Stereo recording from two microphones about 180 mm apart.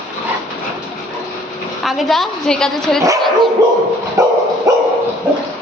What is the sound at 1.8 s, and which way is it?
Speech, centre (ahead or behind).